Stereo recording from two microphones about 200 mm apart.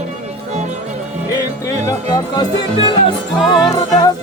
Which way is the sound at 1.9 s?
20° left (ahead or behind).